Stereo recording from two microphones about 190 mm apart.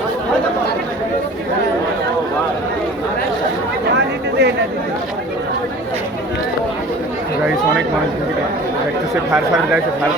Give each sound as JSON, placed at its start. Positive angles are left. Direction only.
{"t": 3.9, "sound": "chatter", "side_deg": -65}